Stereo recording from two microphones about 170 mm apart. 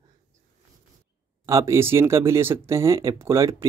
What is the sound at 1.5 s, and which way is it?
Speech, 20° right (ahead or behind).